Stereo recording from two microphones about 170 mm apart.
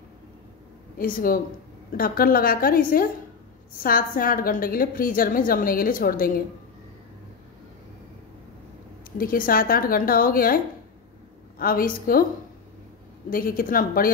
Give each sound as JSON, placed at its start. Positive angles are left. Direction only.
{"t": 0.9, "sound": "a woman's voice", "side_deg": 55}
{"t": 9.2, "sound": "a woman's voice", "side_deg": 60}
{"t": 13.3, "sound": "a woman's voice", "side_deg": 60}